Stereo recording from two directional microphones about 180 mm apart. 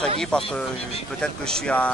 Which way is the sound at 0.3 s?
5° left (ahead or behind).